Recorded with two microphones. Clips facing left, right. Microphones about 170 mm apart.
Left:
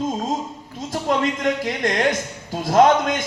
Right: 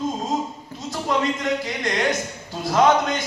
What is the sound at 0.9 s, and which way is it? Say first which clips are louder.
A man's voice: left 2 dB; 50° left (ahead or behind).